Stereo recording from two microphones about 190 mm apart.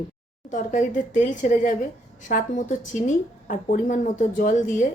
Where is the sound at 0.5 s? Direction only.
40° left (ahead or behind).